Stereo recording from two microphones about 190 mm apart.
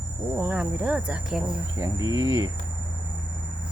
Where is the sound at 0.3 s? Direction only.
10° right (ahead or behind).